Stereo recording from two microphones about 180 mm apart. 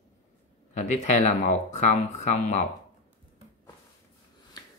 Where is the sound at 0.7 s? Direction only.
40° left (ahead or behind).